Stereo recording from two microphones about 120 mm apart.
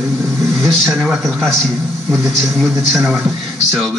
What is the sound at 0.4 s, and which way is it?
Vehicle, 25° right (ahead or behind).